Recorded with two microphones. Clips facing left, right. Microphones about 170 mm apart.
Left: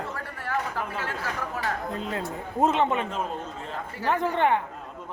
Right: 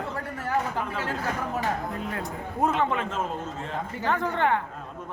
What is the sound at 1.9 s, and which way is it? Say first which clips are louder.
Speech: left 1 dB; 25° left (ahead or behind).